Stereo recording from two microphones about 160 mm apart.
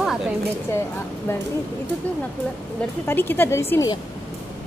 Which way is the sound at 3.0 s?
15° left (ahead or behind).